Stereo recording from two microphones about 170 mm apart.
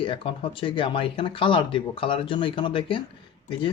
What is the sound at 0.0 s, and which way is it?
Speech, 30° left (ahead or behind).